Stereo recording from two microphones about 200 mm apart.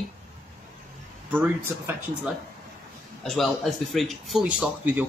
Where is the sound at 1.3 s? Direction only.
10° right (ahead or behind).